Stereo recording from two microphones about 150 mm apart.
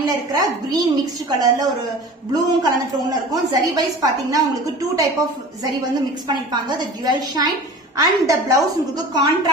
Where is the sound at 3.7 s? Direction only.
25° right (ahead or behind).